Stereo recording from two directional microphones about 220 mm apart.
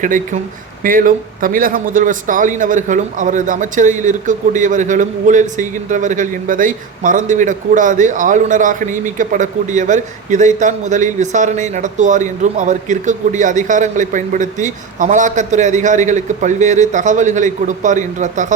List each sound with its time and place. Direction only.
0.0 s speech: 35° right (ahead or behind)